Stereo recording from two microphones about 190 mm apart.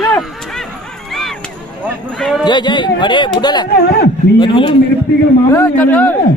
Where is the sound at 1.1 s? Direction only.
Centre (ahead or behind).